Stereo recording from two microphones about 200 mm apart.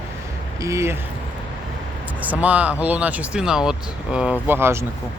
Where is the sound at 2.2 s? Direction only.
10° right (ahead or behind).